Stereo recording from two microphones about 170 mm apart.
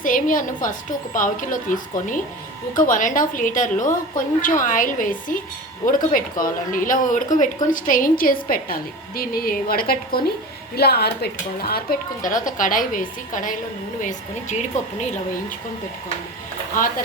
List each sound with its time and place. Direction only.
0.0 s a woman's voice: 50° left (ahead or behind)